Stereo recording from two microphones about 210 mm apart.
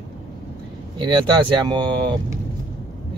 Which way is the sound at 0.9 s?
20° right (ahead or behind).